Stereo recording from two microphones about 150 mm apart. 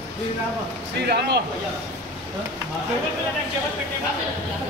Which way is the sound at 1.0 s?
90° right.